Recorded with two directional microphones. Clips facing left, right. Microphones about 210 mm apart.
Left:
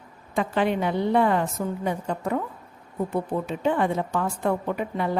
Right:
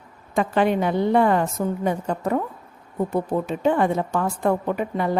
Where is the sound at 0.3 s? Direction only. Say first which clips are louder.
Right 3 dB; 45° right (ahead or behind).